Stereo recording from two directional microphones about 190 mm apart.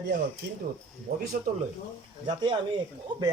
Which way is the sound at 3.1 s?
25° right (ahead or behind).